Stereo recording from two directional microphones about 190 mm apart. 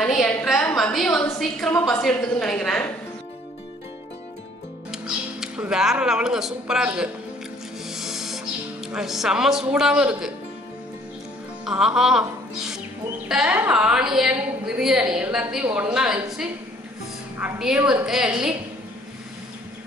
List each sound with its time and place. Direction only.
0.0 s a woman's voice: centre (ahead or behind)
4.9 s speech: 5° right (ahead or behind)
7.9 s music: centre (ahead or behind)
8.8 s a woman's voice: centre (ahead or behind)
11.6 s music: 5° right (ahead or behind)
13.3 s a woman's voice: 5° right (ahead or behind)